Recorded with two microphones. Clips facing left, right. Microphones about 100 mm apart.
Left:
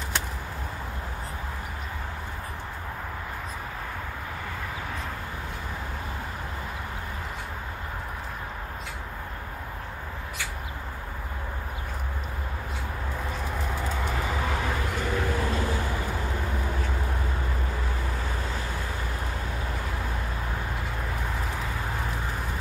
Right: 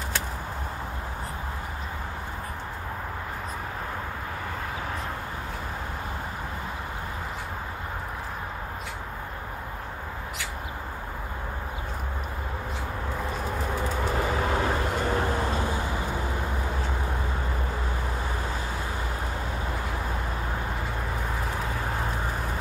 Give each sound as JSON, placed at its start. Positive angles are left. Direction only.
{"t": 14.1, "sound": "vehicle", "side_deg": -30}